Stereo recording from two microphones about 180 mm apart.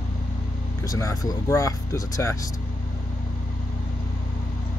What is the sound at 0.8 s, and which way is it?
Speech, 20° left (ahead or behind).